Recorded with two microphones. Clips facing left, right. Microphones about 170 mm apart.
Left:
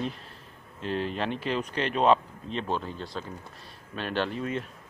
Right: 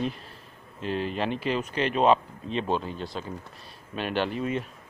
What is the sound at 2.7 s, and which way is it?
Speech, 15° right (ahead or behind).